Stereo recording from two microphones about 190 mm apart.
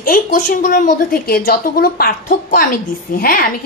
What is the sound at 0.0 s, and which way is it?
A woman's voice, 45° left (ahead or behind).